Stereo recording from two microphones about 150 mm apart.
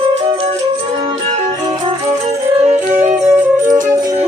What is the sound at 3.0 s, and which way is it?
Music, 55° right (ahead or behind).